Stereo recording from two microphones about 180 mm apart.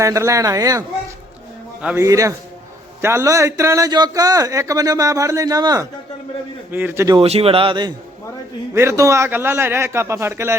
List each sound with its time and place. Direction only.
0.0 s a man's voice: 15° right (ahead or behind)
2.0 s a man's voice: 20° right (ahead or behind)
7.2 s speech: 35° right (ahead or behind)
8.7 s a man's voice: 15° right (ahead or behind)